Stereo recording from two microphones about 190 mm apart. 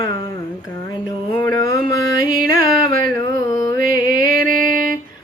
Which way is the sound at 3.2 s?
20° left (ahead or behind).